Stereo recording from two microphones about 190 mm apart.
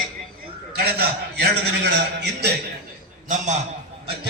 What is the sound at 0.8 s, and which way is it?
A man's voice, 55° right (ahead or behind).